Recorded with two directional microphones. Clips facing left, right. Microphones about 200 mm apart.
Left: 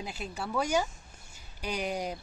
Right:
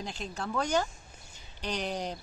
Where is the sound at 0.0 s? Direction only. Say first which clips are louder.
Even; 10° left (ahead or behind).